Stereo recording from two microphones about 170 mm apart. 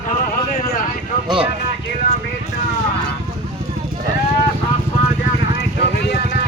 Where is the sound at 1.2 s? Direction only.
30° right (ahead or behind).